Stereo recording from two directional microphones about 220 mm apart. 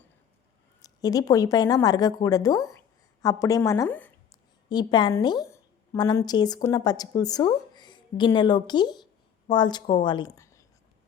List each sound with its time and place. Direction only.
0.8 s a woman's voice: 15° left (ahead or behind)
4.7 s a woman's voice: 20° left (ahead or behind)